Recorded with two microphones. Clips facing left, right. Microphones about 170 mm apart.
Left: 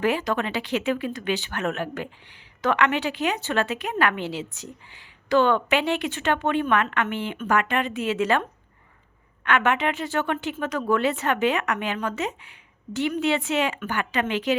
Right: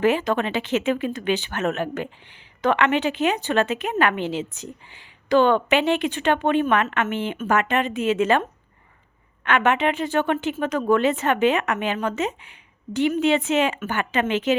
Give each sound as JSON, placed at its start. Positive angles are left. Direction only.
{"t": 0.0, "sound": "a woman's voice", "side_deg": -20}